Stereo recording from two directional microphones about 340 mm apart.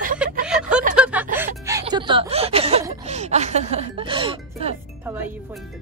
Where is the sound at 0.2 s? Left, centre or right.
Centre.